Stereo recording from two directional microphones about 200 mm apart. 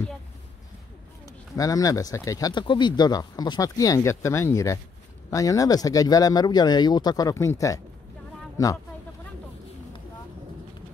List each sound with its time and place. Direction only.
1.6 s speech: 15° left (ahead or behind)